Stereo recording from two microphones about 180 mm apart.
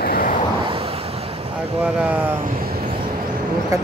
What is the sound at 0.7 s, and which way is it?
Vehicle, 30° right (ahead or behind).